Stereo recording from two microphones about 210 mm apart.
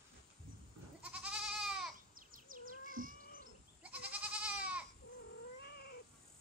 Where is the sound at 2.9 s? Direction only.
40° right (ahead or behind).